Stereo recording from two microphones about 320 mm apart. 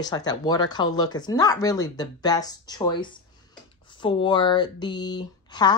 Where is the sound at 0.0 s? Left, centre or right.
Centre.